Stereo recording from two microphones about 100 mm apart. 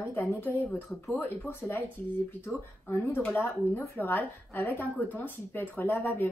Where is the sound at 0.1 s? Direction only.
20° left (ahead or behind).